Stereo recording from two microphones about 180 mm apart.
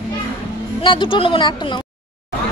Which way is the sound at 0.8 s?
25° left (ahead or behind).